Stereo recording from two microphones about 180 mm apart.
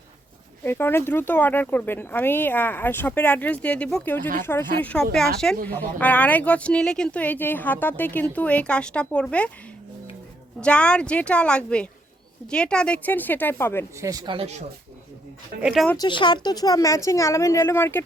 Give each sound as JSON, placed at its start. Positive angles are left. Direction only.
{"t": 0.6, "sound": "speech", "side_deg": 15}
{"t": 10.6, "sound": "a woman's voice", "side_deg": 5}
{"t": 14.0, "sound": "a man's voice", "side_deg": -20}
{"t": 15.6, "sound": "a woman's voice", "side_deg": 0}
{"t": 16.0, "sound": "speech", "side_deg": 25}